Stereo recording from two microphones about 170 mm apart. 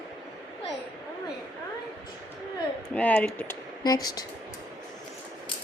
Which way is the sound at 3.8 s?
25° left (ahead or behind).